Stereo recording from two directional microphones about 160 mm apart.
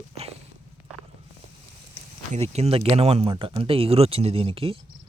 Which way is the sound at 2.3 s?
40° right (ahead or behind).